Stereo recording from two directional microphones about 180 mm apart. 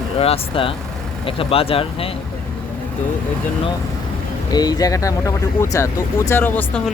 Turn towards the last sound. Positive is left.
turn(degrees=10)  # may be behind; listen again after turning